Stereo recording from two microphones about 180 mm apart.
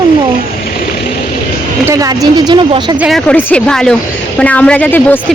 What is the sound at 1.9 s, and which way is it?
Speech, 20° right (ahead or behind).